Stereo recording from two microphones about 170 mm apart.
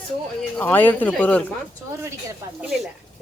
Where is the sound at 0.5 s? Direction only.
10° left (ahead or behind).